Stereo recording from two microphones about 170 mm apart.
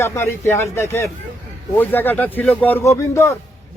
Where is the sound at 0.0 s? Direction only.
15° left (ahead or behind).